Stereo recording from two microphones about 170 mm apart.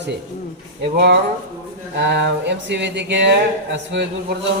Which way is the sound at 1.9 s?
90° right.